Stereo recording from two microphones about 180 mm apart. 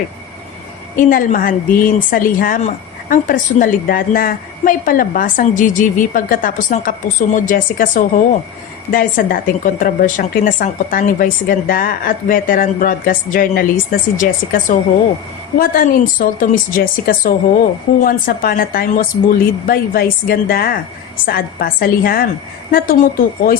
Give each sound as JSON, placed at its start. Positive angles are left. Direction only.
{"t": 0.9, "sound": "a woman's voice", "side_deg": 50}